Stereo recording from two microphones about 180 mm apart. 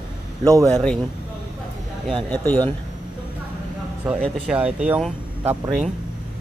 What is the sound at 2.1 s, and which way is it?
Speech, 10° left (ahead or behind).